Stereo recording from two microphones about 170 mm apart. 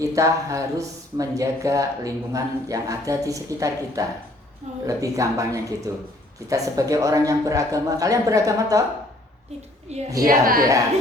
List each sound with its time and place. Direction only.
0.0 s speech: 20° right (ahead or behind)
10.2 s a woman's voice: 60° right (ahead or behind)